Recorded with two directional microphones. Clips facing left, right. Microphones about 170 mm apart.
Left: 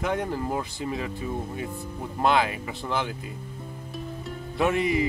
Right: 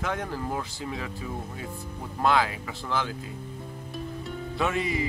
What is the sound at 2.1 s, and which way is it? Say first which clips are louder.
Speech: left 1 dB; 20° left (ahead or behind).